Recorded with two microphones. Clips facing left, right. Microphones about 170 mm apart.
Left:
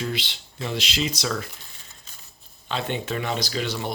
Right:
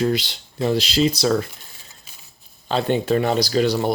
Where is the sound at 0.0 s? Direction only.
40° right (ahead or behind).